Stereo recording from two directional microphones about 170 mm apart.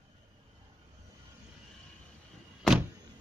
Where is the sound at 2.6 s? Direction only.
Centre (ahead or behind).